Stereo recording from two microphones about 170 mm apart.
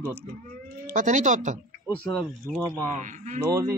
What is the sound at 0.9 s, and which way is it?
Speech, 45° right (ahead or behind).